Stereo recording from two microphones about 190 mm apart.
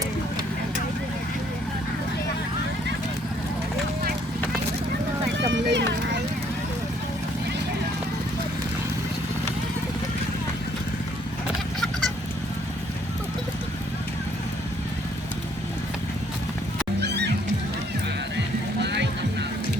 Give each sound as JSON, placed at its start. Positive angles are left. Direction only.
{"t": 5.5, "sound": "run", "side_deg": -70}
{"t": 17.0, "sound": "music", "side_deg": -60}
{"t": 18.8, "sound": "music", "side_deg": -65}